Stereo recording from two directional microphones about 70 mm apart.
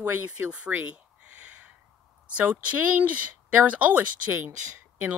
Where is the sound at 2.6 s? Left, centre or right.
Right.